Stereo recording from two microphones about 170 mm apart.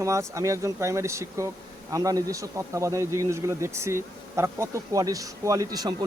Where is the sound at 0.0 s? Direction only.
20° right (ahead or behind).